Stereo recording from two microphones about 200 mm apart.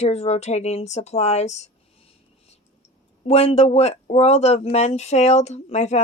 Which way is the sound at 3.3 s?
30° left (ahead or behind).